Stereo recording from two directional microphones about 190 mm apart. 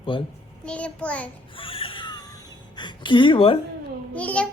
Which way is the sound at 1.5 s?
30° left (ahead or behind).